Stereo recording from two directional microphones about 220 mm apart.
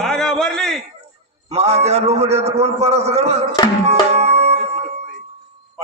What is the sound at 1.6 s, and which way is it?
A man's voice, 30° right (ahead or behind).